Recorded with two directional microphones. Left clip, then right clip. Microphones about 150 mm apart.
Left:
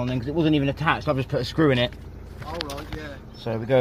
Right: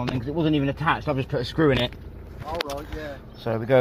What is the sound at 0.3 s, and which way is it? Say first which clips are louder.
Speech: left 2 dB; 10° left (ahead or behind).